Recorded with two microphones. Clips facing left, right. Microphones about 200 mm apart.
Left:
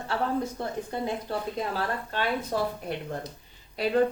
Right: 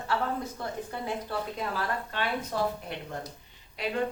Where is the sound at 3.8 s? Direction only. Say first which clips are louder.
Left 5 dB; 35° left (ahead or behind).